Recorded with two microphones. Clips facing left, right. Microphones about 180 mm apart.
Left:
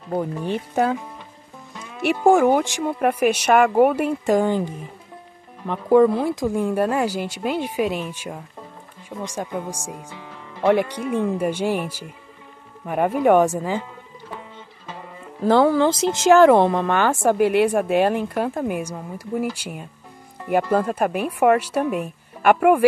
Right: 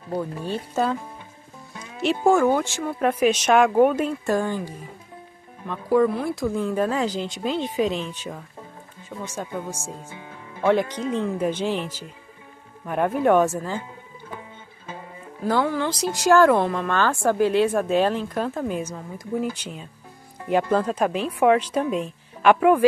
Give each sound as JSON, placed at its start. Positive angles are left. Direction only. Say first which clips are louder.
{"t": 0.1, "sound": "speech", "louder": "left 3 dB", "side_deg": 20}
{"t": 2.0, "sound": "speech", "louder": "left 3 dB", "side_deg": 15}
{"t": 5.9, "sound": "speech", "louder": "left 5 dB", "side_deg": 25}
{"t": 12.8, "sound": "speech", "louder": "left 2 dB", "side_deg": 10}
{"t": 15.4, "sound": "a woman's voice", "louder": "left 7 dB", "side_deg": 30}